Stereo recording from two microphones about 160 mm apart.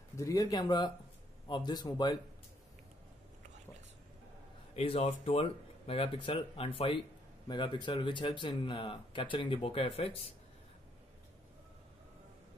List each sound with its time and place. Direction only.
0.2 s speech: 20° left (ahead or behind)
4.7 s speech: 40° left (ahead or behind)